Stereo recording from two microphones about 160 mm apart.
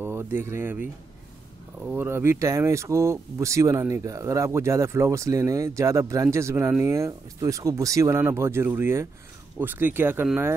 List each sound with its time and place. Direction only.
0.0 s speech: 15° right (ahead or behind)